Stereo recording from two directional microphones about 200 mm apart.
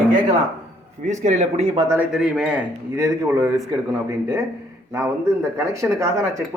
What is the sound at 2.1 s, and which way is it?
A man's voice, 5° right (ahead or behind).